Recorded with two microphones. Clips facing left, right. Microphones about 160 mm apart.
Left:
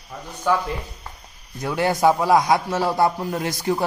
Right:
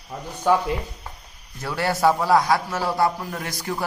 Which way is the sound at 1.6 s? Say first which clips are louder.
Left 3 dB; 20° left (ahead or behind).